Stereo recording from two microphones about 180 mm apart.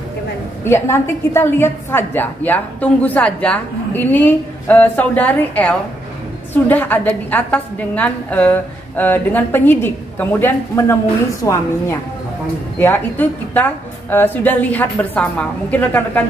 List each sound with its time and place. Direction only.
0.7 s a woman's voice: 15° left (ahead or behind)